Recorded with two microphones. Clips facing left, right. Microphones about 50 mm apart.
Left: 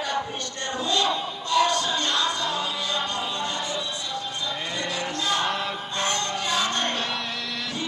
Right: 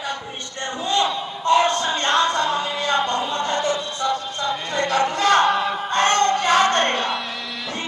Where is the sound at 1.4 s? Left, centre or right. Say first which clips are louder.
Right 5 dB; right.